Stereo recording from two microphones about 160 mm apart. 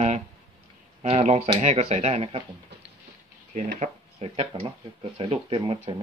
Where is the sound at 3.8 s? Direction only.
40° right (ahead or behind).